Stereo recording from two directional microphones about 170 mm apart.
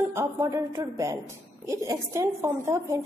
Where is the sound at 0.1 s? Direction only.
15° right (ahead or behind).